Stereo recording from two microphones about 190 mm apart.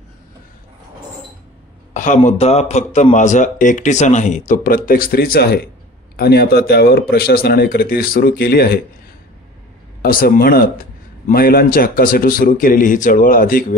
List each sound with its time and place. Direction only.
2.0 s a man's voice: 40° left (ahead or behind)
10.0 s a man's voice: 50° left (ahead or behind)